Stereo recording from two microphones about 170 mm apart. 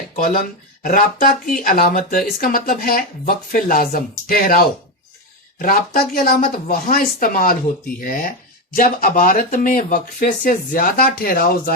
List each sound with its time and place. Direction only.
0.2 s speech: 55° left (ahead or behind)